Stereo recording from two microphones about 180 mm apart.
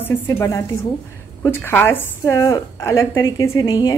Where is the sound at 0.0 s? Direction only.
15° left (ahead or behind).